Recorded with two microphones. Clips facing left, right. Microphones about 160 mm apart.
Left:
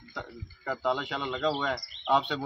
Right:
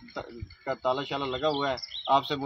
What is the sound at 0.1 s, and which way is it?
Speech, centre (ahead or behind).